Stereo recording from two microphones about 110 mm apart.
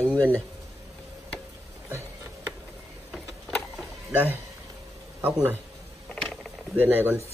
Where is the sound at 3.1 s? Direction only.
Centre (ahead or behind).